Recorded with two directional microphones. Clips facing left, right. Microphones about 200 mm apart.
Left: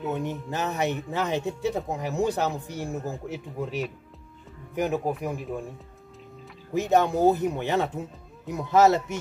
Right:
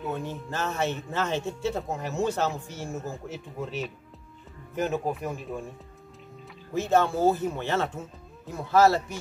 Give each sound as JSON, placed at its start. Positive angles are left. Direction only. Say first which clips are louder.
{"t": 0.0, "sound": "speech", "louder": "left 3 dB", "side_deg": 20}
{"t": 4.7, "sound": "speech", "louder": "left 2 dB", "side_deg": 15}
{"t": 6.7, "sound": "speech", "louder": "left 2 dB", "side_deg": 15}